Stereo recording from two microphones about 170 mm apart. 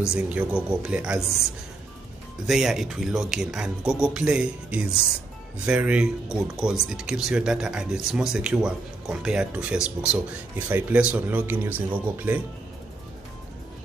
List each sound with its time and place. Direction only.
0.1 s speech: 5° right (ahead or behind)
2.4 s speech: 5° right (ahead or behind)